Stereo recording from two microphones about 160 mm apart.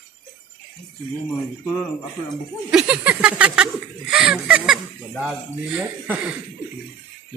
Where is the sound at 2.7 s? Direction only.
5° right (ahead or behind).